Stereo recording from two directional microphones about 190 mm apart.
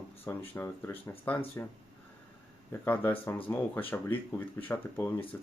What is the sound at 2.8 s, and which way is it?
Speech, 10° left (ahead or behind).